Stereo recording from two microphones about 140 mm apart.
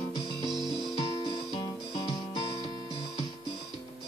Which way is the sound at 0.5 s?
Centre (ahead or behind).